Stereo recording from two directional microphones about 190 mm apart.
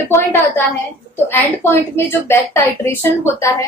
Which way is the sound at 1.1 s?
10° left (ahead or behind).